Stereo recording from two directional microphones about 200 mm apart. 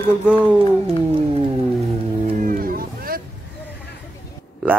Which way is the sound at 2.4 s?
45° right (ahead or behind).